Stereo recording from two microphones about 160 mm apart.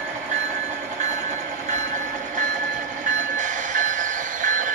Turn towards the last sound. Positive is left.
turn(degrees=-55)  # may be behind; listen again after turning